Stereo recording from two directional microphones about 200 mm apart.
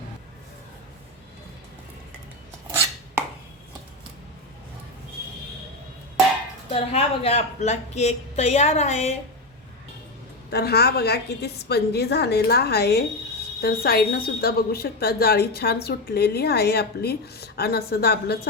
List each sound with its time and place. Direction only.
6.7 s a woman's voice: 30° left (ahead or behind)
10.5 s speech: 50° left (ahead or behind)